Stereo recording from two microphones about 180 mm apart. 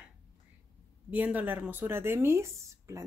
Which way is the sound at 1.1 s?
10° right (ahead or behind).